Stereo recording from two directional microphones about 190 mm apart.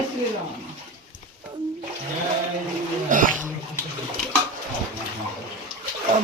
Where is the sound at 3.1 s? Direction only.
45° right (ahead or behind).